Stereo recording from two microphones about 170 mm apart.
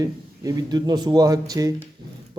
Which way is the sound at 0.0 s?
20° right (ahead or behind).